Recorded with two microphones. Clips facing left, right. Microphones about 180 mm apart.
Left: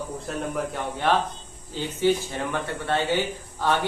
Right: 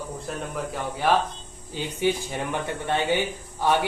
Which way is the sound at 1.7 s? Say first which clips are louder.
Left 2 dB; 15° right (ahead or behind).